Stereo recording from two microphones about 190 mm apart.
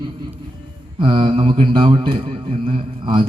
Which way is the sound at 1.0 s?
25° right (ahead or behind).